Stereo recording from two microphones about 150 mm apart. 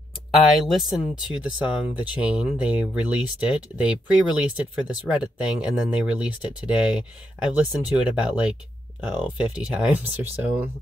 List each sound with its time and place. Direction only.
0.3 s speech: centre (ahead or behind)